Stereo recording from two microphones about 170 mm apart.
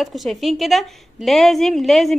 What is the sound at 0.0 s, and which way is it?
A woman's voice, centre (ahead or behind).